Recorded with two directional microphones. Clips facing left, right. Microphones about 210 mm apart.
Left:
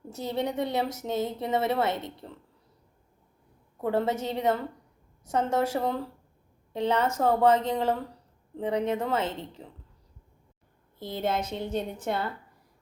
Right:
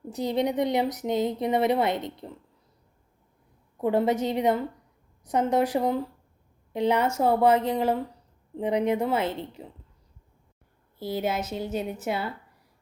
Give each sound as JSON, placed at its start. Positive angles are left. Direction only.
{"t": 0.1, "sound": "a woman's voice", "side_deg": -15}
{"t": 3.8, "sound": "a woman's voice", "side_deg": -15}
{"t": 11.0, "sound": "a woman's voice", "side_deg": -5}